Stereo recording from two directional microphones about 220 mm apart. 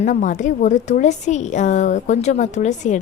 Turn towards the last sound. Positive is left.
turn(degrees=30)  # may be behind; listen again after turning